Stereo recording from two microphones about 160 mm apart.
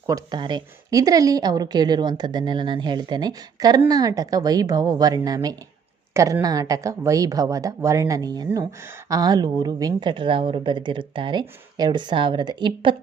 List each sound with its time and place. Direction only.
0.1 s a woman's voice: 25° right (ahead or behind)